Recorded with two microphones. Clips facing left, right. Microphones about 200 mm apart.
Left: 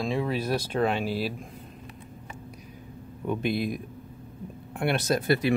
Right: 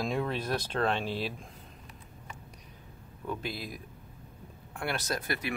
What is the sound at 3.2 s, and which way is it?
Speech, 20° left (ahead or behind).